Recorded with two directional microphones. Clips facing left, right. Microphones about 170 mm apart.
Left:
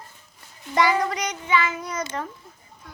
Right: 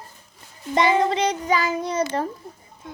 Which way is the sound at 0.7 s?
25° right (ahead or behind).